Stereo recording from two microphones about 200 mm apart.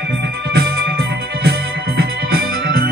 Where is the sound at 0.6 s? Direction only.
55° right (ahead or behind).